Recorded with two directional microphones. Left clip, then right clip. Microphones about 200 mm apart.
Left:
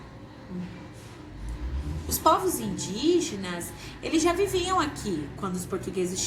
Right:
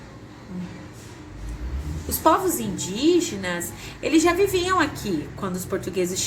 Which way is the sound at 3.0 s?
40° right (ahead or behind).